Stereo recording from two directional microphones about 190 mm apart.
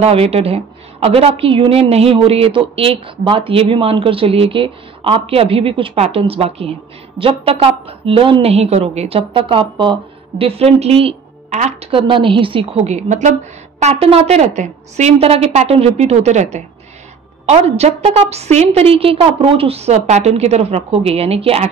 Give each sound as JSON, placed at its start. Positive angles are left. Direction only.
{"t": 0.0, "sound": "a woman's voice", "side_deg": -30}